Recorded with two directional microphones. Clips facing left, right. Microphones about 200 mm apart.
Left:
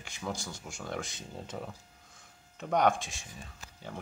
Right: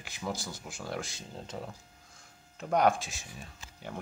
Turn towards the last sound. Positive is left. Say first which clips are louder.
# right 1 dB
turn(degrees=0)  # may be behind; listen again after turning